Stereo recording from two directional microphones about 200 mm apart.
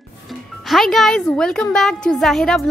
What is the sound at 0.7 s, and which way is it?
A woman's voice, centre (ahead or behind).